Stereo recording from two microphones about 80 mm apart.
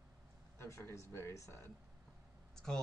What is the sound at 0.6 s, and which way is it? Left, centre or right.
Speech, left.